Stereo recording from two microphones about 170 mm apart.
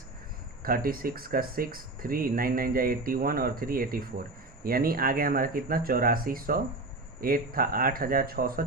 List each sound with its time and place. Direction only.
0.6 s speech: 60° right (ahead or behind)